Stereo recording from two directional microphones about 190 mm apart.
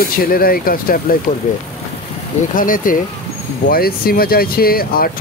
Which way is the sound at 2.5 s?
45° left (ahead or behind).